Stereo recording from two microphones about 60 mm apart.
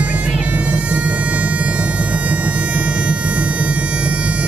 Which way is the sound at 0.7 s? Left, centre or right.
Right.